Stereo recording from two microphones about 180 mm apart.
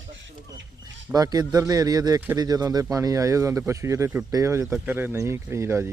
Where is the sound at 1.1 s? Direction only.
20° right (ahead or behind).